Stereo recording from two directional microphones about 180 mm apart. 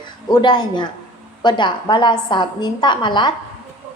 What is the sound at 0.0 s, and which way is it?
A woman's voice, 25° left (ahead or behind).